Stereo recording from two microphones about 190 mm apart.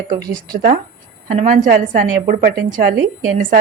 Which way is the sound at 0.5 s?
45° right (ahead or behind).